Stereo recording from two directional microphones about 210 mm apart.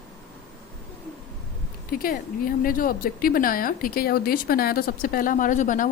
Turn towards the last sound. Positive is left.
turn(degrees=40)  # may be behind; listen again after turning